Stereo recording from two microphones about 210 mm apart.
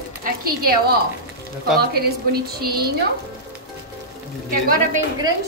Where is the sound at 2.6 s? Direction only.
45° right (ahead or behind).